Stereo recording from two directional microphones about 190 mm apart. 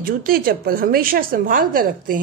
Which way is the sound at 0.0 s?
50° right (ahead or behind).